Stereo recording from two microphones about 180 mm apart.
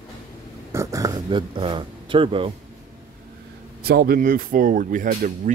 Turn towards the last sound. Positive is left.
turn(degrees=-45)  # may be behind; listen again after turning